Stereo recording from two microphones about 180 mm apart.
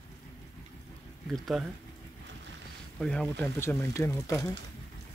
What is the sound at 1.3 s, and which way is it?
Speech, centre (ahead or behind).